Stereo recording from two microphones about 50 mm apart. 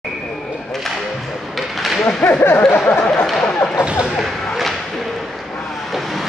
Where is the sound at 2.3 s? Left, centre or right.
Left.